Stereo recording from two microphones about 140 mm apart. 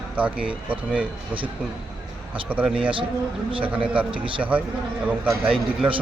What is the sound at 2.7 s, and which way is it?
Speech, 40° right (ahead or behind).